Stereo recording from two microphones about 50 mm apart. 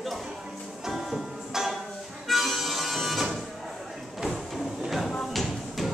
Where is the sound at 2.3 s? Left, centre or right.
Centre.